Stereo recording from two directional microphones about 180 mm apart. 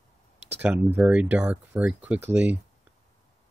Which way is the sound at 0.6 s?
10° right (ahead or behind).